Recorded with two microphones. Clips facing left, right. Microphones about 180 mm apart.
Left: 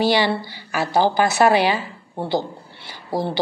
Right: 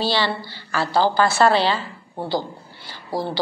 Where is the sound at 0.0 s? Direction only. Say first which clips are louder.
Left 4 dB; 15° left (ahead or behind).